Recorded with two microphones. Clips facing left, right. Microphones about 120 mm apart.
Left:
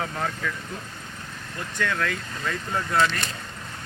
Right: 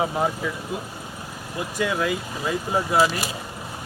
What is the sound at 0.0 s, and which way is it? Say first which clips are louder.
Speech: right 5 dB; 15° right (ahead or behind).